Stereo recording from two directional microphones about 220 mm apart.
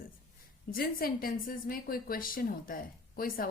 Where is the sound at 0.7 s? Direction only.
40° left (ahead or behind).